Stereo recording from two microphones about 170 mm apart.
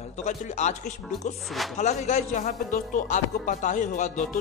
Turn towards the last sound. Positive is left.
turn(degrees=50)  # may be behind; listen again after turning